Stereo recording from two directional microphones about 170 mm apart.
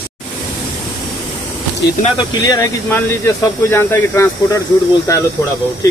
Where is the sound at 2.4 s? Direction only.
20° left (ahead or behind).